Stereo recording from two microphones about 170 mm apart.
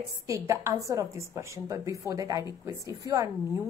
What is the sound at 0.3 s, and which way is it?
Speech, 20° right (ahead or behind).